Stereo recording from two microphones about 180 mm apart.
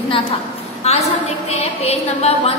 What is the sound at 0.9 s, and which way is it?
A woman's voice, 35° left (ahead or behind).